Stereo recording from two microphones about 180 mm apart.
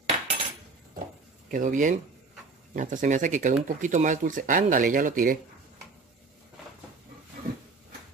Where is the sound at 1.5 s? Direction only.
45° right (ahead or behind).